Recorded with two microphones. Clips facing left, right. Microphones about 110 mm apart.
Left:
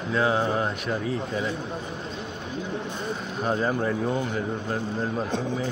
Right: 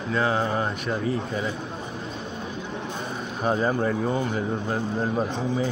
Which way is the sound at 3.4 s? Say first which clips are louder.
Right 2 dB; 5° right (ahead or behind).